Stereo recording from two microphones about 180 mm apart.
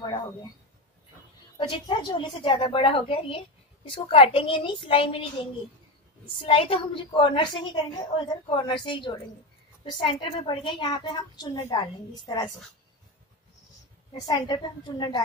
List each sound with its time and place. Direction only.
1.6 s a woman's voice: 25° left (ahead or behind)
14.2 s a woman's voice: 25° left (ahead or behind)